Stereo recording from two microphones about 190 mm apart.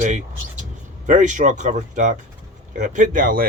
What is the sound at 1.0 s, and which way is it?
Speech, 40° right (ahead or behind).